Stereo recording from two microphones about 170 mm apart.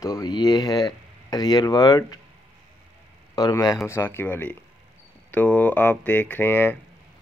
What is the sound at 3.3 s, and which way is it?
Speech, 20° left (ahead or behind).